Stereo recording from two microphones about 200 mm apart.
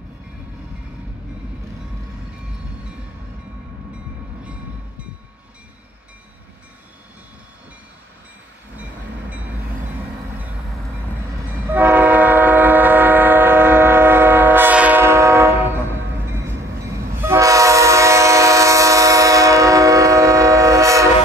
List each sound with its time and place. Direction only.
11.6 s train: 10° right (ahead or behind)
17.2 s train: 15° right (ahead or behind)